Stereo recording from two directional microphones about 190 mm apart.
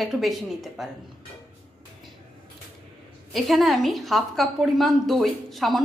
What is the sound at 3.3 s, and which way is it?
A woman's voice, centre (ahead or behind).